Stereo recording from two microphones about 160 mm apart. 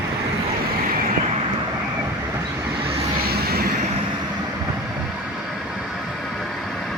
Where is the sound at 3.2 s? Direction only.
75° right (ahead or behind).